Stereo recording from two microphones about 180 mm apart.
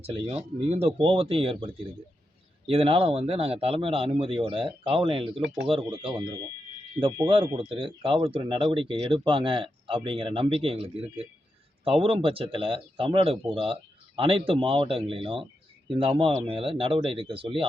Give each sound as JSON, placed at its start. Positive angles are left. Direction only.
{"t": 0.0, "sound": "speech", "side_deg": -35}